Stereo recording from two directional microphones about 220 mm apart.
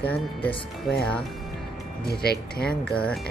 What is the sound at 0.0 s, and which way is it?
Speech, 5° left (ahead or behind).